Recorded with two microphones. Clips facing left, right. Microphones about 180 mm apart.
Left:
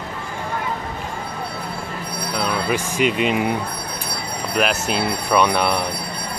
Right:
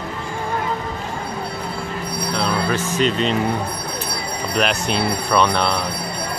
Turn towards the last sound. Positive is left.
turn(degrees=10)  # may be behind; listen again after turning